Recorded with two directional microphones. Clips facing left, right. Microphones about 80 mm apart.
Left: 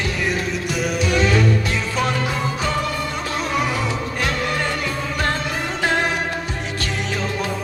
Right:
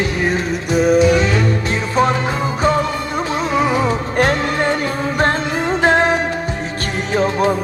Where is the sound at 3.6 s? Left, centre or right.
Right.